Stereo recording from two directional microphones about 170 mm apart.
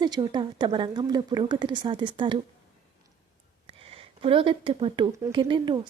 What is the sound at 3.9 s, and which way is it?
A woman's voice, 30° right (ahead or behind).